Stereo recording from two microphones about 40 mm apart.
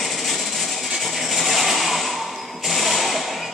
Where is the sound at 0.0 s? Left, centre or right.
Centre.